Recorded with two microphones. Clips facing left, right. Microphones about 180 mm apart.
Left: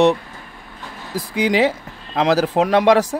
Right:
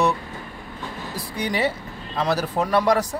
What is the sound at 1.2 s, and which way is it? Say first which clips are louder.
Speech: left 8 dB; 90° left.